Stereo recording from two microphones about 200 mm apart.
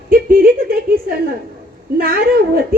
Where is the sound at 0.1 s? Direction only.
45° right (ahead or behind).